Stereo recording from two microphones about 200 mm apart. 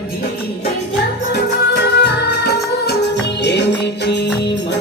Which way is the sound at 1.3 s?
55° left (ahead or behind).